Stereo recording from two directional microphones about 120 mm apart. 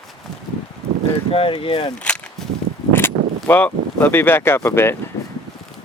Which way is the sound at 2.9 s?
20° left (ahead or behind).